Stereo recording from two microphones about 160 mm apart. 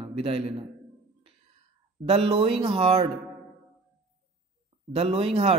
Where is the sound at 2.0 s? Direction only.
40° right (ahead or behind).